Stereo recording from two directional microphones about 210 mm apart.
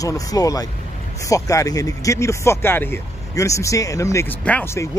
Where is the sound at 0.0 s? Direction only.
15° left (ahead or behind).